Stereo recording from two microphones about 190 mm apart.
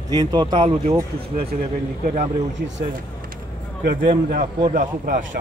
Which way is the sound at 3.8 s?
50° right (ahead or behind).